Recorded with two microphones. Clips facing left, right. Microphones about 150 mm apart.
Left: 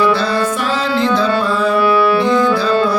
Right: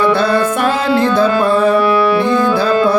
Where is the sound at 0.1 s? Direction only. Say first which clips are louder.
Right 3 dB; 55° right (ahead or behind).